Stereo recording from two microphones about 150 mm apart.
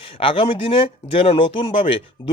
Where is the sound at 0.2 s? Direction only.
40° left (ahead or behind).